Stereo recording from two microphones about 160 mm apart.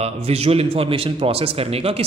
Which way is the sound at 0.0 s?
40° right (ahead or behind).